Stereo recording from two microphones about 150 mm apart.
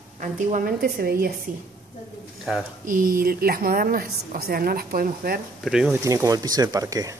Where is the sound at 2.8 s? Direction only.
70° right (ahead or behind).